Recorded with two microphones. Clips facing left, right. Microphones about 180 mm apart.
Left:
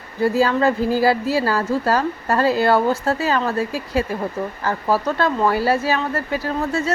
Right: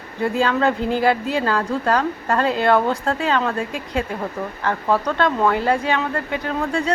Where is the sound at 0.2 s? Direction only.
5° left (ahead or behind).